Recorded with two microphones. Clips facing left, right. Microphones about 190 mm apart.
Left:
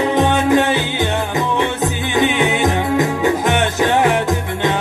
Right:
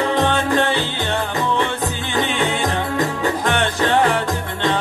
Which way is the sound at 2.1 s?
15° left (ahead or behind).